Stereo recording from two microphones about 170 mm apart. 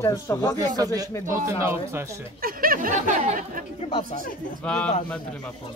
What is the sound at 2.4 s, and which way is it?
Speech, 60° right (ahead or behind).